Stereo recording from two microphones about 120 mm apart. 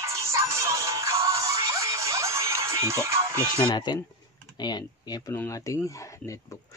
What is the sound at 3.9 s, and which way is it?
Speech, 40° left (ahead or behind).